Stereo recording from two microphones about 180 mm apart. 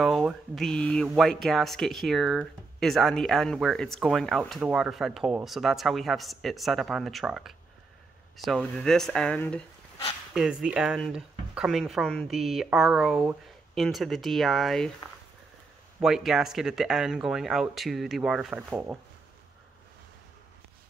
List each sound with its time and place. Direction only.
0.0 s speech: 5° right (ahead or behind)
16.0 s speech: centre (ahead or behind)